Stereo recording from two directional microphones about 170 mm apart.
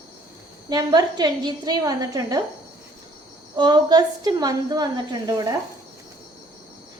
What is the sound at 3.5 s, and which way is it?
A woman's voice, 25° right (ahead or behind).